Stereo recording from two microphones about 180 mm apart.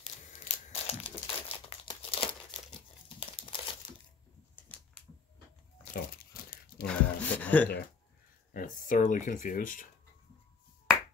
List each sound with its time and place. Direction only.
0.0 s crumpling: 35° left (ahead or behind)
5.9 s crumpling: 55° left (ahead or behind)
6.9 s speech: 10° left (ahead or behind)
8.5 s speech: 45° left (ahead or behind)